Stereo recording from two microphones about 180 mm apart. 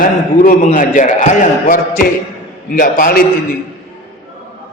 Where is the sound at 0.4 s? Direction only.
45° left (ahead or behind).